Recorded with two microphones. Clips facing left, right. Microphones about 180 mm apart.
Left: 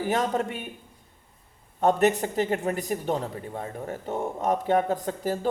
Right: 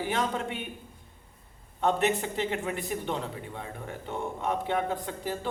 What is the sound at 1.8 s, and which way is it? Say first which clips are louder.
A man's voice: left 5 dB; 45° left (ahead or behind).